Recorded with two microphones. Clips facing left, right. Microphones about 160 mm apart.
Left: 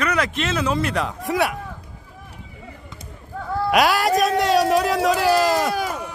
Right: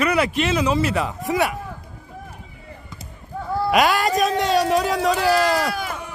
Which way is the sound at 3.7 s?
Centre (ahead or behind).